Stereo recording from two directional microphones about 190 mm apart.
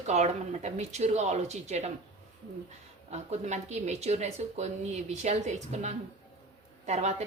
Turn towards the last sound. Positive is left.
turn(degrees=-35)  # may be behind; listen again after turning